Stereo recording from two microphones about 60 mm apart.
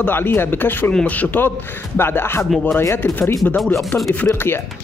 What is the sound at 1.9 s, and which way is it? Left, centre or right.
Speech, left.